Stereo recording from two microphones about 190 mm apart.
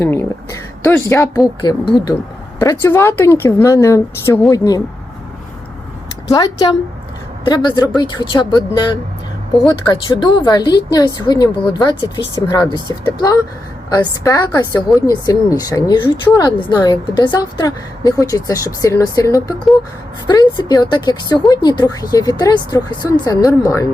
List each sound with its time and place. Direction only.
0.0 s speech: 15° left (ahead or behind)
6.2 s a woman's voice: 20° left (ahead or behind)